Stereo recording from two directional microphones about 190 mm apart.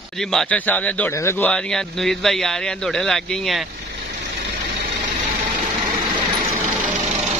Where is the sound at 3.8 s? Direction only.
55° right (ahead or behind).